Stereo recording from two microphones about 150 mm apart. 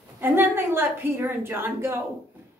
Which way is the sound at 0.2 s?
15° right (ahead or behind).